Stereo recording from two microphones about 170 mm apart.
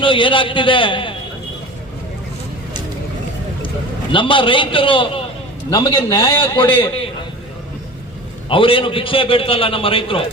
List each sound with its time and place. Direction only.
0.0 s a man's voice: 30° left (ahead or behind)
4.1 s a man's voice: 30° left (ahead or behind)
8.4 s a man's voice: 30° left (ahead or behind)